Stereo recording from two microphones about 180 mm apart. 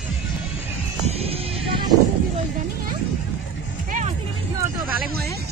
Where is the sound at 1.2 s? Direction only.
30° right (ahead or behind).